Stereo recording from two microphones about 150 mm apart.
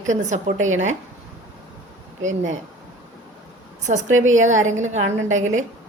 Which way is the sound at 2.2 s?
55° right (ahead or behind).